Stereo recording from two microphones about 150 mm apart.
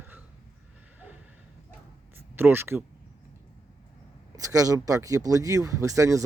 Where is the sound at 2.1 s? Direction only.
15° right (ahead or behind).